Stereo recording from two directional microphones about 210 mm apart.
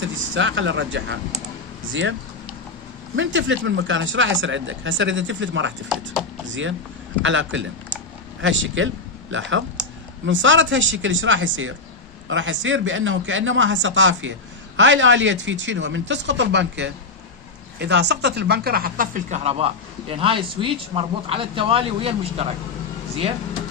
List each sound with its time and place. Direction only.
0.0 s speech: 60° right (ahead or behind)
3.2 s speech: 65° right (ahead or behind)
7.2 s speech: 65° right (ahead or behind); by 22.5 s 25° right (ahead or behind)